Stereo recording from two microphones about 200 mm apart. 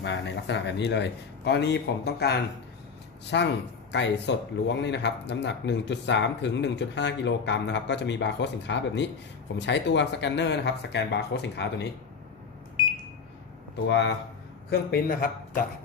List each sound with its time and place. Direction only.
0.0 s speech: 65° left (ahead or behind)
12.8 s a sound: 25° left (ahead or behind)
13.8 s speech: 60° left (ahead or behind)
14.7 s a man's voice: 50° left (ahead or behind)